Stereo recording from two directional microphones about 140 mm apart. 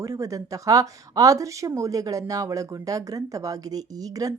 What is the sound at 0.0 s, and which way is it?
Speech, 25° right (ahead or behind).